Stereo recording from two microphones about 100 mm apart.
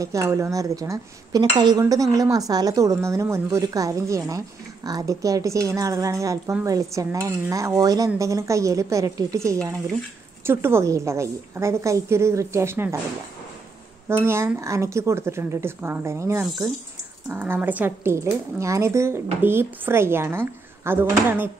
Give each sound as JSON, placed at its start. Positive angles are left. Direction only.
{"t": 0.0, "sound": "a woman's voice", "side_deg": -30}
{"t": 14.0, "sound": "a woman's voice", "side_deg": -25}